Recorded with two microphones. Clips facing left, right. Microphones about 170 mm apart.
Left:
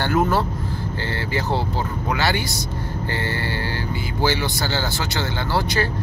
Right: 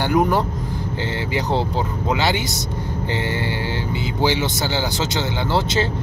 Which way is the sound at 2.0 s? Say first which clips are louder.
Right 2 dB; 20° right (ahead or behind).